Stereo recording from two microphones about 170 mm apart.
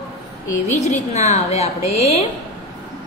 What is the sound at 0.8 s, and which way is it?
Speech, 40° left (ahead or behind).